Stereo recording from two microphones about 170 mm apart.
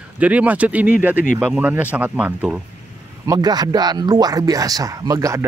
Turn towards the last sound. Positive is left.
turn(degrees=-20)  # may be behind; listen again after turning